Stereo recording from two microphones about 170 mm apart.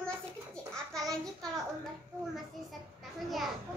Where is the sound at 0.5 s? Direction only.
5° left (ahead or behind).